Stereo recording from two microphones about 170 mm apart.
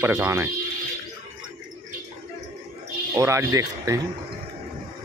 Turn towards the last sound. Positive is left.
turn(degrees=-20)  # may be behind; listen again after turning